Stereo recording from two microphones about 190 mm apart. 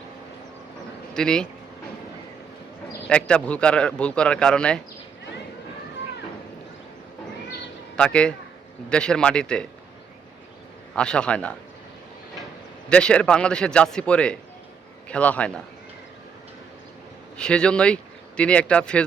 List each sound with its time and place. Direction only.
1.1 s speech: 5° left (ahead or behind)
3.1 s speech: 5° left (ahead or behind)
7.9 s speech: 5° left (ahead or behind)
10.9 s speech: 5° left (ahead or behind)
12.9 s speech: 5° left (ahead or behind)
17.3 s speech: 5° left (ahead or behind)